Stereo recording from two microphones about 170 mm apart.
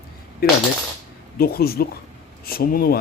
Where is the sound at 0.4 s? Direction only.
65° left (ahead or behind).